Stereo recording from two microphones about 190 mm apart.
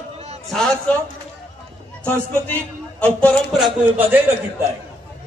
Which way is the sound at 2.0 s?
10° left (ahead or behind).